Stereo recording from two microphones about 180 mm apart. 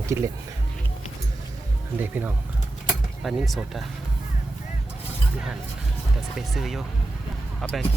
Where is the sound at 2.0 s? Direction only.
10° right (ahead or behind).